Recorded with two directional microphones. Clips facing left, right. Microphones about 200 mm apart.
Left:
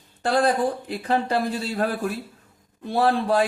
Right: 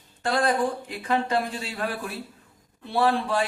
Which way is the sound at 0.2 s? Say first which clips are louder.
Left 3 dB; 35° left (ahead or behind).